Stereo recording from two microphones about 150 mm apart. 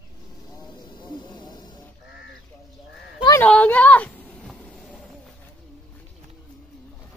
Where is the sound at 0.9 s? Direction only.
30° left (ahead or behind).